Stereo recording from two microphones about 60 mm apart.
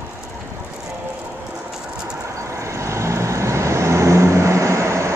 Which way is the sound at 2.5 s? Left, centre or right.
Right.